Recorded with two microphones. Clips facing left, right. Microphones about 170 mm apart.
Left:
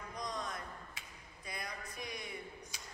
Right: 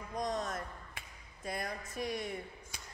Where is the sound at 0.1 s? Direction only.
45° right (ahead or behind).